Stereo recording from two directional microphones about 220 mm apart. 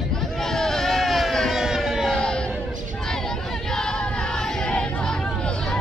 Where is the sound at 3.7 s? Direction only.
5° left (ahead or behind).